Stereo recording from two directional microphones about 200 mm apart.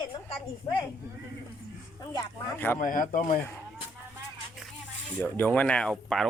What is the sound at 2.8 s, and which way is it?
Speech, 40° left (ahead or behind).